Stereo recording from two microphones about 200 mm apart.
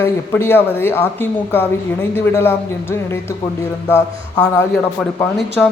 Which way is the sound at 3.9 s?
10° left (ahead or behind).